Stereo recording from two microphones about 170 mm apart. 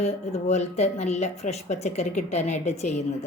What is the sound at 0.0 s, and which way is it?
A woman's voice, 40° left (ahead or behind).